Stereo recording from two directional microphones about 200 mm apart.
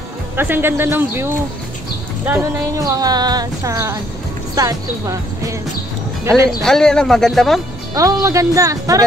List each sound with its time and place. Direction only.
0.4 s speech: 10° right (ahead or behind)
6.6 s speech: 5° left (ahead or behind)
7.9 s speech: 15° right (ahead or behind)